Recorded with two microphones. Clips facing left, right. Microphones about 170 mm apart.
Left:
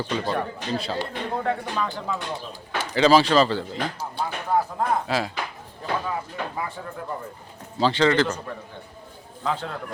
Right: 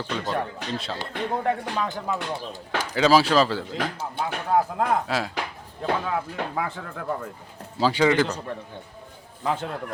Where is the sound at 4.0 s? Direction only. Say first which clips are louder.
Even; 55° right (ahead or behind).